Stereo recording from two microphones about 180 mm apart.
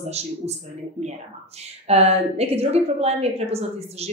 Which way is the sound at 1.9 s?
35° right (ahead or behind).